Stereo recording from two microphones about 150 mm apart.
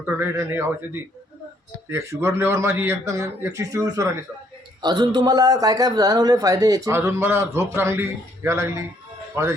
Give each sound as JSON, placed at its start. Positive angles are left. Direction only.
{"t": 0.0, "sound": "speech", "side_deg": -15}
{"t": 1.9, "sound": "a man's voice", "side_deg": -20}